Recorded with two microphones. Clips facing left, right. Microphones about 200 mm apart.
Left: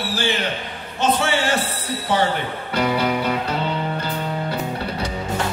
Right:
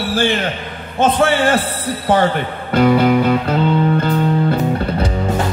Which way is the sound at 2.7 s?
50° right (ahead or behind).